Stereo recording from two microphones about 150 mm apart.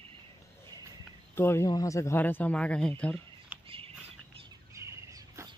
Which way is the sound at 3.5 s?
10° right (ahead or behind).